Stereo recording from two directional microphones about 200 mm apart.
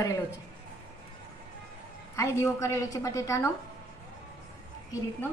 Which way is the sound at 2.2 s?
15° left (ahead or behind).